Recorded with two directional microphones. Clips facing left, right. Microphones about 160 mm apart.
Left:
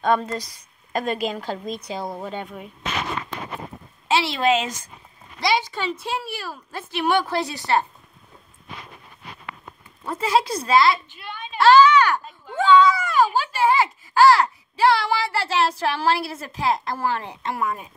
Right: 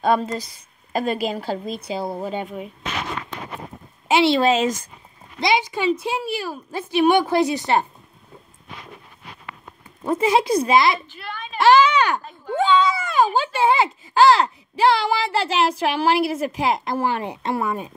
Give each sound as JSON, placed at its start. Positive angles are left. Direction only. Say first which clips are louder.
{"t": 0.0, "sound": "speech", "louder": "right 1 dB", "side_deg": -5}
{"t": 4.1, "sound": "a woman's voice", "louder": "right 4 dB", "side_deg": -25}
{"t": 5.4, "sound": "a woman's voice", "louder": "right 3 dB", "side_deg": -15}
{"t": 10.0, "sound": "a woman's voice", "louder": "right 3 dB", "side_deg": -15}
{"t": 11.5, "sound": "a sound", "louder": "left 1 dB", "side_deg": -15}
{"t": 13.4, "sound": "speech", "louder": "right 1 dB", "side_deg": -20}